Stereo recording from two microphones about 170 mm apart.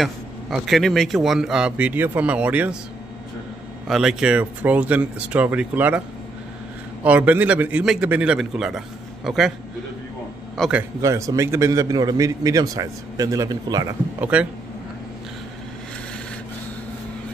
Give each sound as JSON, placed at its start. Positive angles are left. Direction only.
{"t": 0.0, "sound": "a man's voice", "side_deg": 0}
{"t": 3.8, "sound": "a man's voice", "side_deg": 0}
{"t": 10.6, "sound": "a man's voice", "side_deg": -5}
{"t": 11.0, "sound": "a man's voice", "side_deg": -20}
{"t": 14.2, "sound": "a man's voice", "side_deg": -5}